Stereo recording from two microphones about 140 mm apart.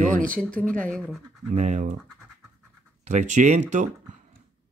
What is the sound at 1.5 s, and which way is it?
Speech, 55° right (ahead or behind).